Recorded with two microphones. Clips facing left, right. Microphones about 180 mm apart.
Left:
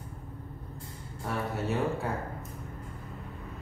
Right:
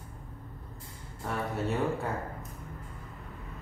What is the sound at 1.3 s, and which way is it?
Speech, 5° left (ahead or behind).